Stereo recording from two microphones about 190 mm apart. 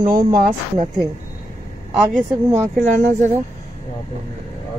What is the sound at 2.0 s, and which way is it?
Speech, centre (ahead or behind).